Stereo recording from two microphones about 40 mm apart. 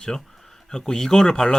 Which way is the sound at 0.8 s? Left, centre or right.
Centre.